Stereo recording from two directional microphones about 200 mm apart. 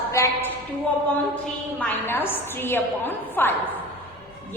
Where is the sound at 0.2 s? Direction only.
15° left (ahead or behind).